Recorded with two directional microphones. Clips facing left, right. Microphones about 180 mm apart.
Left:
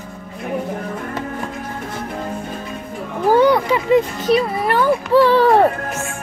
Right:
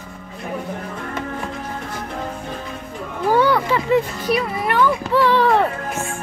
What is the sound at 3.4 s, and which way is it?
A child's voice, 20° left (ahead or behind).